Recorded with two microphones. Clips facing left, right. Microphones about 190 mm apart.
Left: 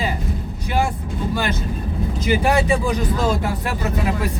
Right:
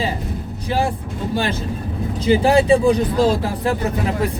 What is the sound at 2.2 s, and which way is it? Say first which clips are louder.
Speech: right 4 dB; 30° right (ahead or behind).